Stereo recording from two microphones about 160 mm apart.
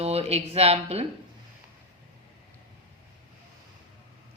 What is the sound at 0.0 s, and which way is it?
Speech, 40° right (ahead or behind).